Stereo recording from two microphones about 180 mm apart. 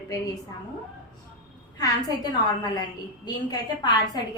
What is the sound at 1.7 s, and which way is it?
A woman's voice, 20° left (ahead or behind).